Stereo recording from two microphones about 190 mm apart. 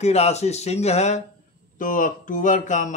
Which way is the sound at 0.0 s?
35° left (ahead or behind).